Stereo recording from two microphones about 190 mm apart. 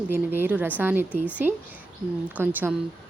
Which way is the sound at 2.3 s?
10° right (ahead or behind).